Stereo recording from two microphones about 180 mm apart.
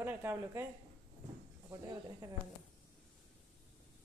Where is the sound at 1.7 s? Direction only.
20° right (ahead or behind).